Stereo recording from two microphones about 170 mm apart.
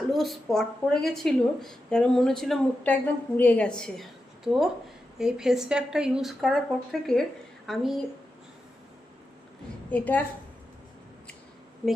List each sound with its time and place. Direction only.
0.1 s a woman's voice: centre (ahead or behind)
9.9 s a woman's voice: 10° left (ahead or behind)